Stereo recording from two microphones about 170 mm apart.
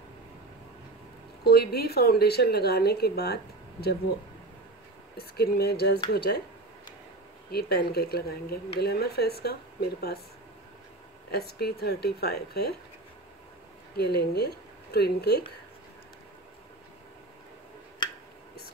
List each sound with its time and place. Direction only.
1.4 s speech: 70° left (ahead or behind)
5.1 s speech: 65° left (ahead or behind)
7.5 s speech: 65° left (ahead or behind)
11.3 s speech: 65° left (ahead or behind)
13.9 s speech: 70° left (ahead or behind)